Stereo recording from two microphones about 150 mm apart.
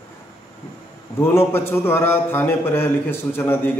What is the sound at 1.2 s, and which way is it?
A man's voice, 15° left (ahead or behind).